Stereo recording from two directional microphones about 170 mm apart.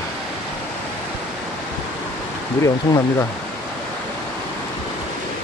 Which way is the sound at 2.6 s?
20° left (ahead or behind).